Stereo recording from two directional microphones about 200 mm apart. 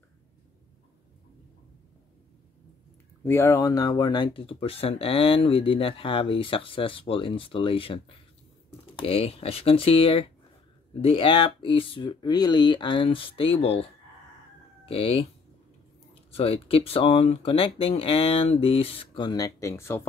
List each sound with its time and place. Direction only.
3.3 s speech: 15° left (ahead or behind); by 13.8 s 30° left (ahead or behind)
14.9 s speech: 30° left (ahead or behind)
16.3 s speech: 30° left (ahead or behind); by 20.0 s 15° left (ahead or behind)